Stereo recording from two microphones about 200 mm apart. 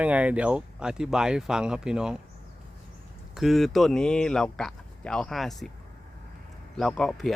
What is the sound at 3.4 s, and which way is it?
A man's voice, centre (ahead or behind).